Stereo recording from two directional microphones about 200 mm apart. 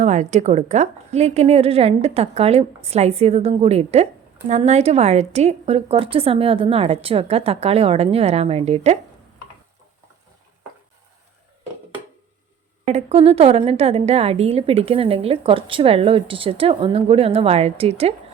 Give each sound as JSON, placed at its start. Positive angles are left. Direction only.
{"t": 0.0, "sound": "a woman's voice", "side_deg": -35}
{"t": 12.8, "sound": "a woman's voice", "side_deg": -35}